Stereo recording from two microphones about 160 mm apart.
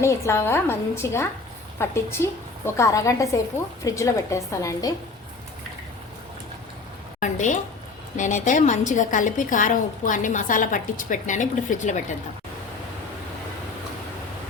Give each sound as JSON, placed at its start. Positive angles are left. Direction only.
{"t": 0.0, "sound": "a woman's voice", "side_deg": 15}
{"t": 7.2, "sound": "a woman's voice", "side_deg": 50}